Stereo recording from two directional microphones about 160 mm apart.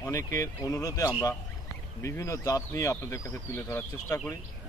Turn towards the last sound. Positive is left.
turn(degrees=15)  # may be behind; listen again after turning